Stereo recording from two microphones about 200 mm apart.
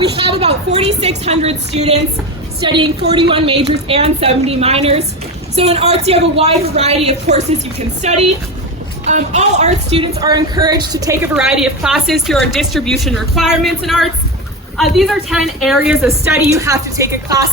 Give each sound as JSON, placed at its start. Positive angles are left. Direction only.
{"t": 0.0, "sound": "a woman's voice", "side_deg": -30}
{"t": 11.3, "sound": "a woman's voice", "side_deg": -5}
{"t": 16.0, "sound": "a woman's voice", "side_deg": -15}